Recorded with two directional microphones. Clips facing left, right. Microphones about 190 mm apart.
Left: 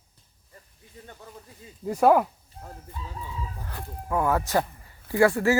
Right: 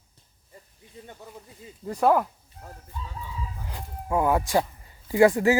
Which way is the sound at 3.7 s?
15° right (ahead or behind).